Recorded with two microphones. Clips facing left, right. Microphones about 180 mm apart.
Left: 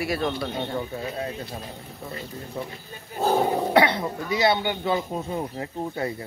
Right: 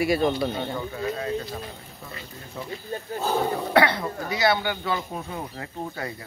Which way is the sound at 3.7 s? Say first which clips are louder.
Right 2 dB; 20° left (ahead or behind).